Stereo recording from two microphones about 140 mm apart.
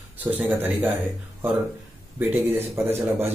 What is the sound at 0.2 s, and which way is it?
Speech, 15° right (ahead or behind).